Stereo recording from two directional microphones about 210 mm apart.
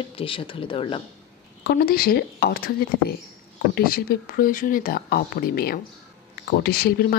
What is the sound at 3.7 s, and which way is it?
A woman's voice, 45° left (ahead or behind).